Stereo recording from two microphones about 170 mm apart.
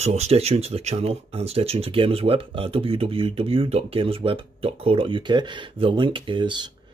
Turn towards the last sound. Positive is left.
turn(degrees=-30)  # may be behind; listen again after turning